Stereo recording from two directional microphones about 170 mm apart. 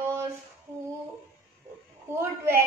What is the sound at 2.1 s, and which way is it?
Speech, 15° right (ahead or behind).